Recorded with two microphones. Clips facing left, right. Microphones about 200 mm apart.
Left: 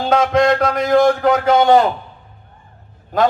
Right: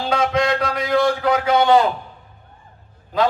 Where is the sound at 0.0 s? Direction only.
50° left (ahead or behind).